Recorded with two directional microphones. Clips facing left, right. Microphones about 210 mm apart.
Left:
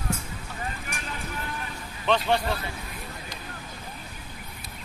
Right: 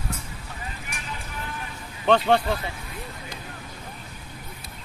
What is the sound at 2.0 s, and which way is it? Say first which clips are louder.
Speech: right 5 dB; 55° right (ahead or behind).